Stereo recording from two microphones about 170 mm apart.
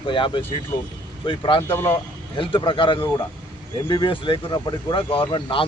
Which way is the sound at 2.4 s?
30° left (ahead or behind).